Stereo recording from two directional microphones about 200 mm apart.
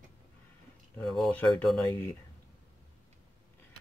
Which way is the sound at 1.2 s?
10° left (ahead or behind).